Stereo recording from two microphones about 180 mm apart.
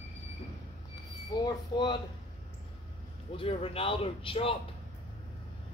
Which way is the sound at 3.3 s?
30° left (ahead or behind).